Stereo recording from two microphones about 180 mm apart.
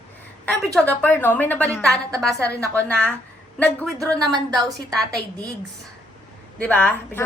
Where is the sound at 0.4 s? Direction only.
5° left (ahead or behind).